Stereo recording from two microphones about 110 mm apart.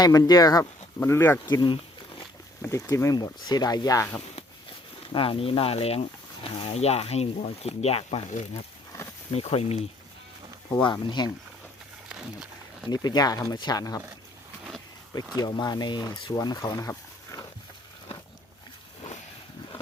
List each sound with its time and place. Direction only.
0.0 s speech: 35° left (ahead or behind)
0.9 s speech: 20° left (ahead or behind)
1.5 s a sound: 45° left (ahead or behind)
2.6 s speech: 30° left (ahead or behind)
5.1 s speech: 55° left (ahead or behind)
8.9 s snake: 30° left (ahead or behind)
9.3 s speech: 65° left (ahead or behind)
10.9 s speech: 40° left (ahead or behind)
12.0 s wild animals: 5° right (ahead or behind)
12.9 s speech: 35° left (ahead or behind)
15.4 s speech: 40° left (ahead or behind)